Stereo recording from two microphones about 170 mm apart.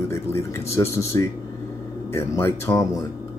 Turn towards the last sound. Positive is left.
turn(degrees=15)  # may be behind; listen again after turning